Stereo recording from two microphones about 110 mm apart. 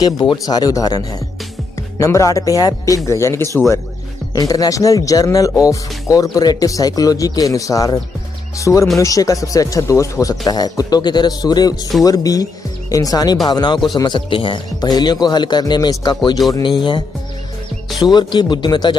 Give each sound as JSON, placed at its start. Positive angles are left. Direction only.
{"t": 0.0, "sound": "a man's voice", "side_deg": 40}
{"t": 17.8, "sound": "music", "side_deg": 0}
{"t": 18.1, "sound": "a man's voice", "side_deg": 45}